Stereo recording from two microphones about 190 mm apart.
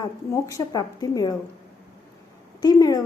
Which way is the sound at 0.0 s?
20° left (ahead or behind).